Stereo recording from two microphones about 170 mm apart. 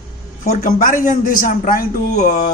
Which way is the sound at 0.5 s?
50° left (ahead or behind).